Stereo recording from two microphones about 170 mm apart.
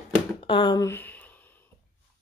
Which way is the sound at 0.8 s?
10° left (ahead or behind).